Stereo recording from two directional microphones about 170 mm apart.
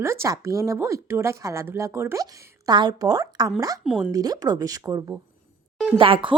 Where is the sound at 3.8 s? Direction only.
5° right (ahead or behind).